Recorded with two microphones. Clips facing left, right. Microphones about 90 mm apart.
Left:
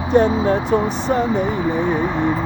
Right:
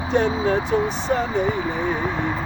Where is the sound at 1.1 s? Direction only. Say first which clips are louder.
Left 6 dB; 15° left (ahead or behind).